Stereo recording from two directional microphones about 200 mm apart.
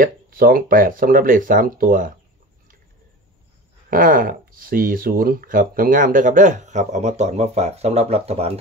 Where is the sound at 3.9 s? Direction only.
45° right (ahead or behind).